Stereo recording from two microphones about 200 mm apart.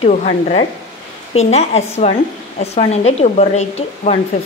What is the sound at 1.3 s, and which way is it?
Speech, 35° left (ahead or behind).